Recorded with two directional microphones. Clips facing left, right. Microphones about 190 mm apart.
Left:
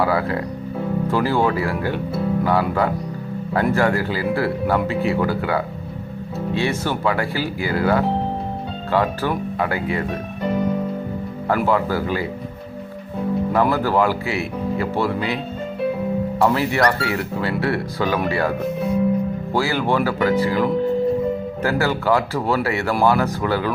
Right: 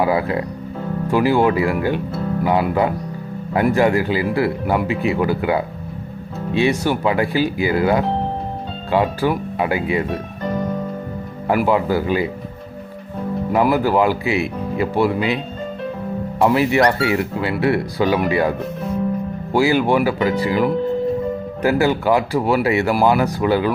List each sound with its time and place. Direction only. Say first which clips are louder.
0.0 s speech: right 2 dB; 15° right (ahead or behind)
11.4 s speech: right 2 dB; 15° right (ahead or behind)
13.5 s speech: right 4 dB; 15° right (ahead or behind)
16.4 s speech: right 4 dB; 15° right (ahead or behind)
19.5 s speech: right 5 dB; 15° right (ahead or behind)